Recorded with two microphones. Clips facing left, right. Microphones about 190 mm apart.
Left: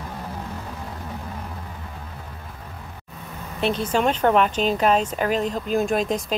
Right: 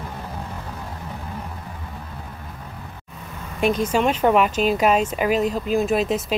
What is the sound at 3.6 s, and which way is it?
A woman's voice, 10° right (ahead or behind).